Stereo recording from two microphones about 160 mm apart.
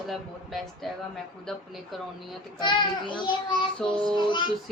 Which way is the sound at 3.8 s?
5° left (ahead or behind).